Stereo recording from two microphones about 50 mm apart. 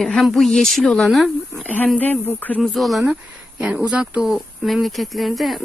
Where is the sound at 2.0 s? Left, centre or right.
Left.